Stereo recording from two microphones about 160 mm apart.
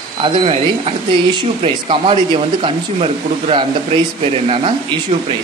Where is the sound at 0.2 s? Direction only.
40° right (ahead or behind).